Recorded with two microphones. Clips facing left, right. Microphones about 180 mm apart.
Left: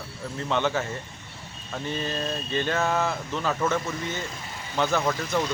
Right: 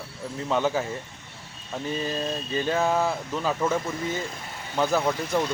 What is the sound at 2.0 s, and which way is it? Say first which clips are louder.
Speech: right 1 dB; 10° right (ahead or behind).